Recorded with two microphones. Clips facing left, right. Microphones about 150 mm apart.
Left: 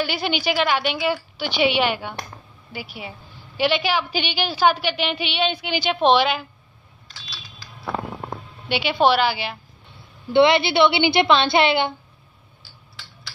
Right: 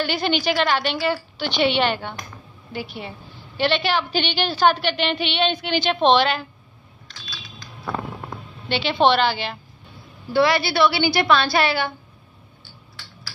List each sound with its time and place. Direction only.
0.0 s a woman's voice: 10° left (ahead or behind)
7.2 s typing: 5° left (ahead or behind)
8.6 s a woman's voice: 10° left (ahead or behind)
10.3 s a woman's voice: 20° left (ahead or behind)